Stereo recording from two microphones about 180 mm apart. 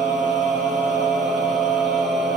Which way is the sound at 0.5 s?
Centre (ahead or behind).